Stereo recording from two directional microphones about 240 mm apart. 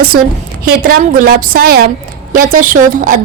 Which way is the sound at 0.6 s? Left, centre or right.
Right.